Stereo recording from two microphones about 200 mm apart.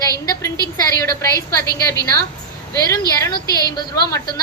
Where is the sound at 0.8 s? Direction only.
15° left (ahead or behind).